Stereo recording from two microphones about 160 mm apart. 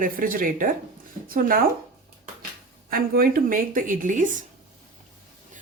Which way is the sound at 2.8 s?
65° right (ahead or behind).